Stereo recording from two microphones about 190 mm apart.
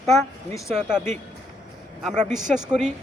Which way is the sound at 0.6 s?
Centre (ahead or behind).